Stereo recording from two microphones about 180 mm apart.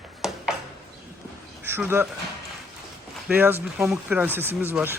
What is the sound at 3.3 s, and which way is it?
Speech, 10° right (ahead or behind).